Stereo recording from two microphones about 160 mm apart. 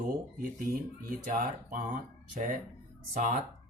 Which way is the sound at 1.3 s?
60° right (ahead or behind).